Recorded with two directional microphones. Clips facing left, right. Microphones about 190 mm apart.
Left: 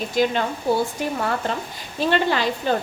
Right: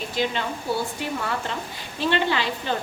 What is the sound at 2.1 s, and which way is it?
Speech, 45° left (ahead or behind).